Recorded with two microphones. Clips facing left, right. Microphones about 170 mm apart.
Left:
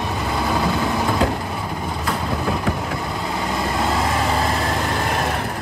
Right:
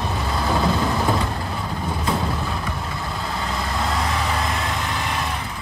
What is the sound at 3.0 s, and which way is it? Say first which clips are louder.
Vehicle: left 3 dB; 20° left (ahead or behind).